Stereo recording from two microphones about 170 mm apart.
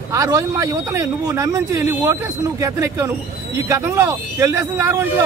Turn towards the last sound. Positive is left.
turn(degrees=-15)  # may be behind; listen again after turning